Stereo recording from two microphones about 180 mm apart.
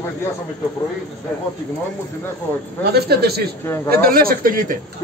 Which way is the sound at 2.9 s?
60° right (ahead or behind).